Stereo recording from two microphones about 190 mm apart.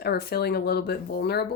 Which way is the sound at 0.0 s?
55° left (ahead or behind).